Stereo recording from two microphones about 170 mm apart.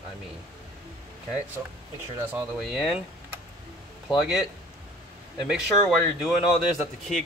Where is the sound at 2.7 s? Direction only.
Centre (ahead or behind).